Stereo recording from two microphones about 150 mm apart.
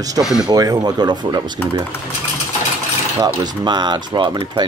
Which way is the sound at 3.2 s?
30° right (ahead or behind).